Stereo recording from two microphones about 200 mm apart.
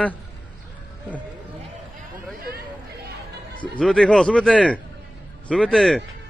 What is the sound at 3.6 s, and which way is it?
Speech, 5° left (ahead or behind).